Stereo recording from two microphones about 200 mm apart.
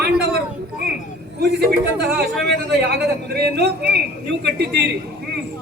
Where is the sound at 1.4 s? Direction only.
55° right (ahead or behind).